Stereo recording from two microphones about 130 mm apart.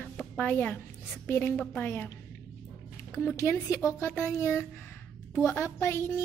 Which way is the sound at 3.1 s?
20° left (ahead or behind).